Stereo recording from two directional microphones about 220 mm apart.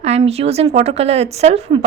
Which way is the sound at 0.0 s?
30° right (ahead or behind).